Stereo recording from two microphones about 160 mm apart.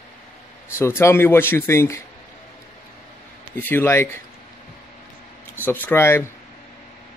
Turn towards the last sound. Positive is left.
turn(degrees=15)  # may be behind; listen again after turning